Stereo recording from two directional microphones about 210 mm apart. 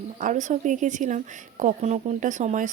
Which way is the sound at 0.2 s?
35° right (ahead or behind).